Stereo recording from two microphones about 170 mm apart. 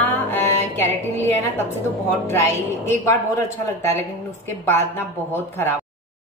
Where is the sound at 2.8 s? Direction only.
15° left (ahead or behind).